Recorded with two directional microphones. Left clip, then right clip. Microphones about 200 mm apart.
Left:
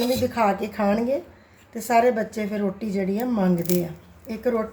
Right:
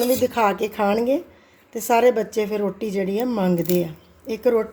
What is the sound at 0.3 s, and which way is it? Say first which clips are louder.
Speech: right 2 dB; 45° right (ahead or behind).